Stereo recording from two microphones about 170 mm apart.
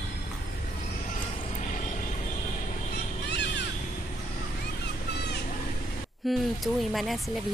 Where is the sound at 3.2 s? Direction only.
90° left.